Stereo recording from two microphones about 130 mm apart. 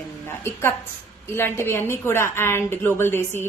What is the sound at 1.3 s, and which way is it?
A woman's voice, 20° left (ahead or behind).